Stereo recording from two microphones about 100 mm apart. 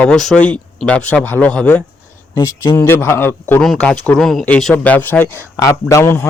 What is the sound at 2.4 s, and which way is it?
Speech, 30° left (ahead or behind).